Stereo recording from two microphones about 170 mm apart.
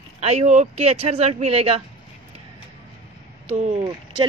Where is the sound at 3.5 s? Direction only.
45° right (ahead or behind).